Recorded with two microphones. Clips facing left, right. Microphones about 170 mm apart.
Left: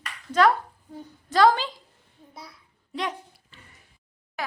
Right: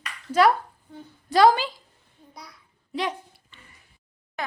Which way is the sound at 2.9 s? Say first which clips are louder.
Right 2 dB; centre (ahead or behind).